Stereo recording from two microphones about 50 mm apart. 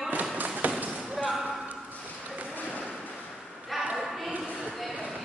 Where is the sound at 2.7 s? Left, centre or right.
Right.